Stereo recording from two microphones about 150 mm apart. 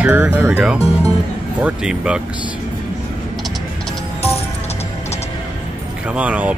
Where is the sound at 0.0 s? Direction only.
10° right (ahead or behind).